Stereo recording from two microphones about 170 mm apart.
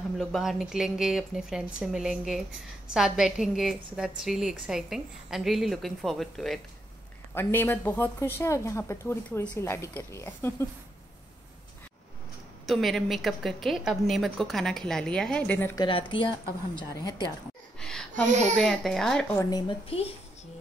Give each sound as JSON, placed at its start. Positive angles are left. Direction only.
{"t": 0.2, "sound": "a woman's voice", "side_deg": 0}
{"t": 7.3, "sound": "a woman's voice", "side_deg": 15}
{"t": 12.6, "sound": "a woman's voice", "side_deg": 0}
{"t": 15.7, "sound": "speech", "side_deg": 30}
{"t": 17.7, "sound": "a sound", "side_deg": 5}
{"t": 18.5, "sound": "a woman's voice", "side_deg": 5}
{"t": 19.9, "sound": "a woman's voice", "side_deg": 35}